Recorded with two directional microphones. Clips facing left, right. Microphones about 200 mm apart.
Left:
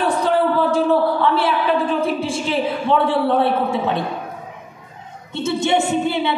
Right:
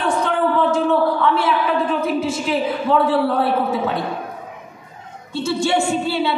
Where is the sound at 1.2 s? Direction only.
30° left (ahead or behind).